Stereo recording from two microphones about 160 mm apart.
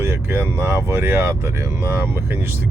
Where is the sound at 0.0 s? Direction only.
15° right (ahead or behind).